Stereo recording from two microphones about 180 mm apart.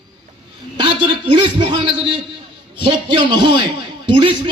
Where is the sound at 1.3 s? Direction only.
25° right (ahead or behind).